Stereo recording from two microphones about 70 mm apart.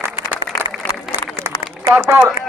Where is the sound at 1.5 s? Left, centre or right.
Right.